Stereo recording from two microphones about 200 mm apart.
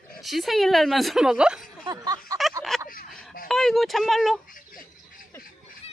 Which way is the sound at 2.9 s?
45° left (ahead or behind).